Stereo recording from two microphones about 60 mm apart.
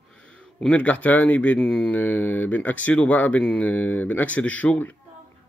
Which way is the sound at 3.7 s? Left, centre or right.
Left.